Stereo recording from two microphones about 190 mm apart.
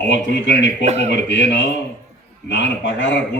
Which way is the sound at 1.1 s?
65° left (ahead or behind).